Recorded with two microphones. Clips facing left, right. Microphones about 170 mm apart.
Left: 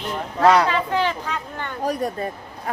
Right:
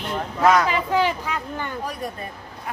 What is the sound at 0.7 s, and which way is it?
Speech, 10° right (ahead or behind).